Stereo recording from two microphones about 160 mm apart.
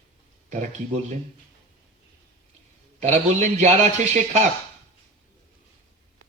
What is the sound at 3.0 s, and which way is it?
Speech, 45° right (ahead or behind).